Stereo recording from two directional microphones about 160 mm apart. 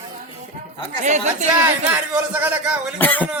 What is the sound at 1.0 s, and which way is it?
Speech, 50° right (ahead or behind).